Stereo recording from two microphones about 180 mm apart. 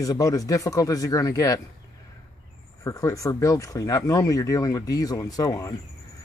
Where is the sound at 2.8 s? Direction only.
20° left (ahead or behind).